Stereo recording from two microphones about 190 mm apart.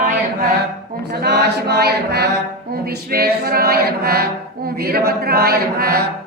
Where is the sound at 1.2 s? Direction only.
60° right (ahead or behind).